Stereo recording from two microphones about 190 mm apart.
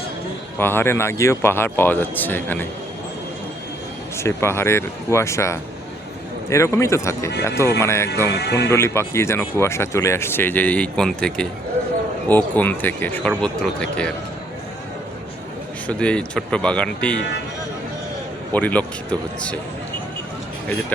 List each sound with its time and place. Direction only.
0.6 s speech: 10° left (ahead or behind)
4.2 s speech: 15° left (ahead or behind)
8.3 s speech: 60° left (ahead or behind)
8.7 s speech: 15° left (ahead or behind)
15.9 s speech: 5° left (ahead or behind)
18.5 s speech: 10° left (ahead or behind)